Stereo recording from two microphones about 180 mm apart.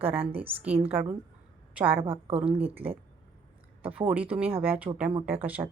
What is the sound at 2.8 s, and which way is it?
Speech, 30° right (ahead or behind).